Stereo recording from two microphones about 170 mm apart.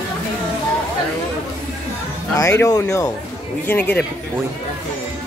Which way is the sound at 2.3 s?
20° left (ahead or behind).